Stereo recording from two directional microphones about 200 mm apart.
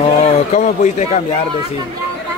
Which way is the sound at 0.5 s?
35° left (ahead or behind).